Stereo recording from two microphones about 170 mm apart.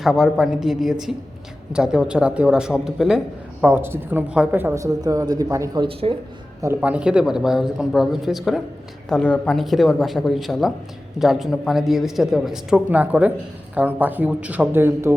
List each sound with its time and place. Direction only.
0.0 s a woman's voice: centre (ahead or behind); by 6.1 s 30° right (ahead or behind)
6.7 s speech: 5° right (ahead or behind)